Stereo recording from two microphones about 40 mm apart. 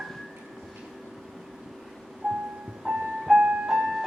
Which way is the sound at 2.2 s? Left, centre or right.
Centre.